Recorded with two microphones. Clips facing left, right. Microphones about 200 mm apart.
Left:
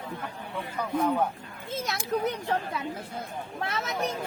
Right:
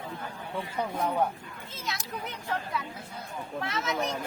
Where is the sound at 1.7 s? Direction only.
45° left (ahead or behind).